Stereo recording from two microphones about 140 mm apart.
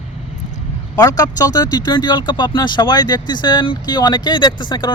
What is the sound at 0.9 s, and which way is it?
Speech, 25° left (ahead or behind).